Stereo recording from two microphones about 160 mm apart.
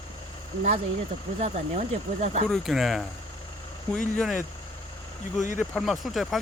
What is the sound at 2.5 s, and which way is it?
Speech, centre (ahead or behind).